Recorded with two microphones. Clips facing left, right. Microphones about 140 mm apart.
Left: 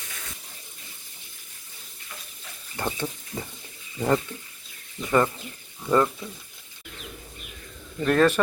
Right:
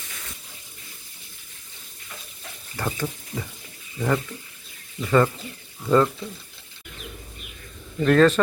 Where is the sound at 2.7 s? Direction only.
25° left (ahead or behind).